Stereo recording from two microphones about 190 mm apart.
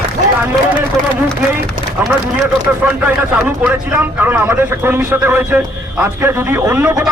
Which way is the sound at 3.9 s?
10° right (ahead or behind).